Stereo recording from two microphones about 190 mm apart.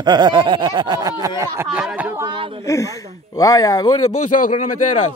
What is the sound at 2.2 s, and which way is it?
Speech, 25° right (ahead or behind).